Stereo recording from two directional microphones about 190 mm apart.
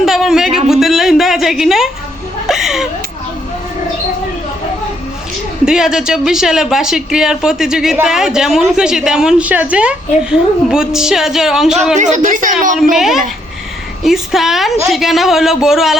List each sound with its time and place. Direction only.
0.0 s a sound: 5° right (ahead or behind)
2.5 s chuckle: centre (ahead or behind)
5.6 s speech: 5° right (ahead or behind)
11.9 s a woman's voice: 40° right (ahead or behind)
12.7 s speech: centre (ahead or behind)